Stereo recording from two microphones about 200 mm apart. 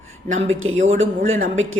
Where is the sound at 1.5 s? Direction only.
80° right.